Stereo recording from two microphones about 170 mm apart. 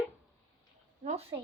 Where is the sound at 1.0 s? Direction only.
40° right (ahead or behind).